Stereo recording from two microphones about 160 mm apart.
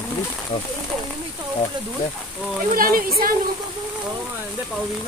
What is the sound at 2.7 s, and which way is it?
Speech, 65° right (ahead or behind).